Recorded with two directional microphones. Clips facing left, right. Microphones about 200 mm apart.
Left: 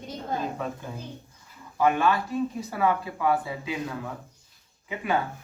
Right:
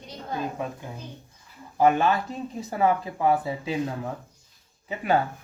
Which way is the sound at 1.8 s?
30° right (ahead or behind).